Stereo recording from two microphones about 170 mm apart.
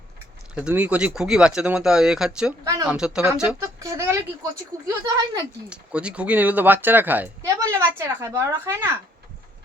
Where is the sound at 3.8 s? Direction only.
20° right (ahead or behind).